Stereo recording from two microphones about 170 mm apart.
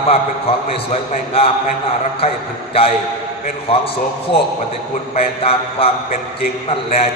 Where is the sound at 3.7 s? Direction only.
35° left (ahead or behind).